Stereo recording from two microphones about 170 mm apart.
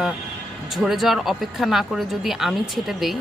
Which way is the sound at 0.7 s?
Centre (ahead or behind).